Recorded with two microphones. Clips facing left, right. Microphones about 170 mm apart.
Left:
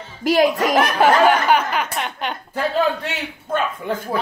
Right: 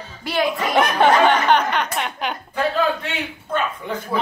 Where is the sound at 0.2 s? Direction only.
40° left (ahead or behind).